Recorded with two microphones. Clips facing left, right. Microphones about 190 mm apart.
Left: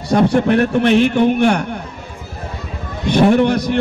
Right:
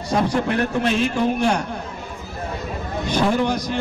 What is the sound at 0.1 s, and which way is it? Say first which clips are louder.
A man's voice: left 7 dB; 65° left (ahead or behind).